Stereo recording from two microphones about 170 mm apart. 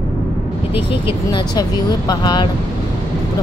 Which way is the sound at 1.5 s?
25° left (ahead or behind).